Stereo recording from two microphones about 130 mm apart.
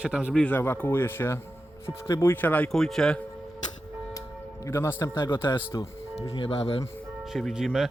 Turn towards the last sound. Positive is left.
turn(degrees=-5)  # may be behind; listen again after turning